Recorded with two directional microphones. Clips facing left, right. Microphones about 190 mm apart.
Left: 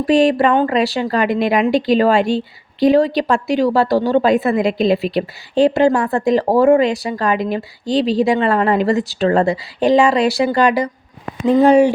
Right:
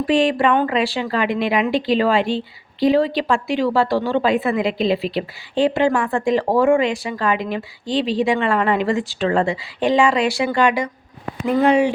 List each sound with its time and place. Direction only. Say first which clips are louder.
0.0 s a woman's voice: left 4 dB; 40° left (ahead or behind)